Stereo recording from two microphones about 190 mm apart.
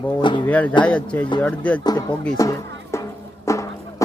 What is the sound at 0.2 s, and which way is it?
Speech, 25° left (ahead or behind).